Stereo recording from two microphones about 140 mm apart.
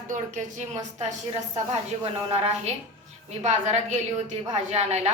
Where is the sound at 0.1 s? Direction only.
60° right (ahead or behind).